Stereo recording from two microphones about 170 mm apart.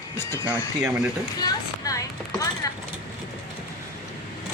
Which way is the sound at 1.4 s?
20° left (ahead or behind).